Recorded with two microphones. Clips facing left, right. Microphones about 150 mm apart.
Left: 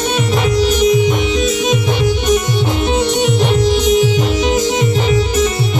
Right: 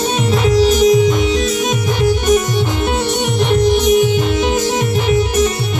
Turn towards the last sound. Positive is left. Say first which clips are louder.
# right 1 dB
turn(degrees=-50)  # may be behind; listen again after turning